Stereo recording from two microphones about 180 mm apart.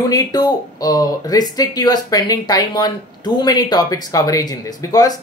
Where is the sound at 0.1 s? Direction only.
20° left (ahead or behind).